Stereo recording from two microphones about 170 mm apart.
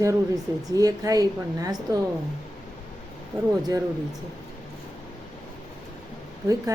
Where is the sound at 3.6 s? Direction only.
20° right (ahead or behind).